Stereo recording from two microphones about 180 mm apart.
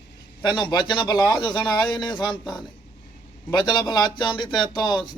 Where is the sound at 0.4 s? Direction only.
25° left (ahead or behind).